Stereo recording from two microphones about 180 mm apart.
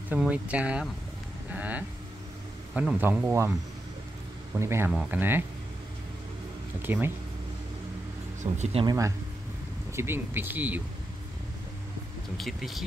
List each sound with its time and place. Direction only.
0.1 s speech: 5° right (ahead or behind)
4.6 s speech: 15° right (ahead or behind)
6.8 s speech: 10° right (ahead or behind)
8.5 s speech: 35° right (ahead or behind)
8.8 s speech: 15° right (ahead or behind)
12.4 s speech: centre (ahead or behind)